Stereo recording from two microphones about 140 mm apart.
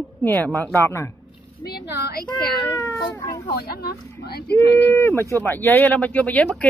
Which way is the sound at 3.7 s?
90° left.